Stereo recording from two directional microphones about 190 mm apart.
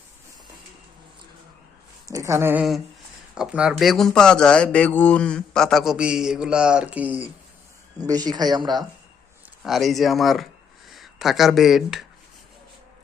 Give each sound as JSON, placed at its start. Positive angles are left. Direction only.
{"t": 2.0, "sound": "speech", "side_deg": -15}
{"t": 7.9, "sound": "speech", "side_deg": -20}
{"t": 9.6, "sound": "speech", "side_deg": 0}